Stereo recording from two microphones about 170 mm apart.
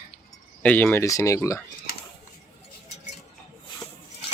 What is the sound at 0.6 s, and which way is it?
Speech, 10° left (ahead or behind).